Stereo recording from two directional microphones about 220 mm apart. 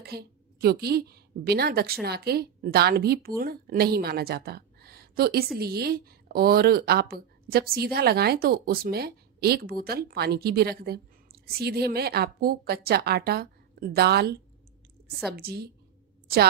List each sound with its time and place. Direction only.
0.0 s a woman's voice: 45° right (ahead or behind)